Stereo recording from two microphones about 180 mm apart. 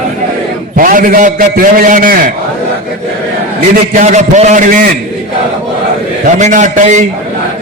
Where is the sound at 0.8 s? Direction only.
50° right (ahead or behind).